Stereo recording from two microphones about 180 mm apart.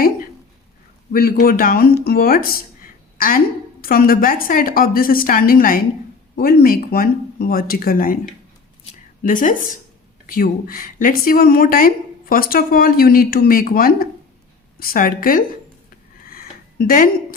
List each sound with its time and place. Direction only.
1.1 s a woman's voice: 55° left (ahead or behind)
9.2 s a woman's voice: 45° left (ahead or behind)
16.2 s a sound: 55° left (ahead or behind)